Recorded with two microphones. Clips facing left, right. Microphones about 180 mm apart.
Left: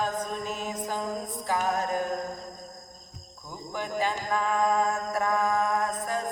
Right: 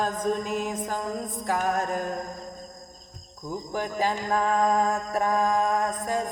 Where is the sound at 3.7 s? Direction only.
40° right (ahead or behind).